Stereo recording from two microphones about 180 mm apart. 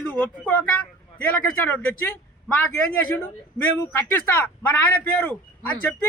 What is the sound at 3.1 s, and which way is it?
Speech, 10° left (ahead or behind).